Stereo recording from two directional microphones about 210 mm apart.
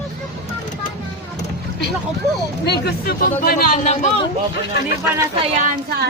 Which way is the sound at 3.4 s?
40° left (ahead or behind).